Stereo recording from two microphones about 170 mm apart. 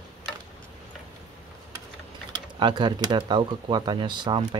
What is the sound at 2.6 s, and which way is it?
Speech, 25° right (ahead or behind).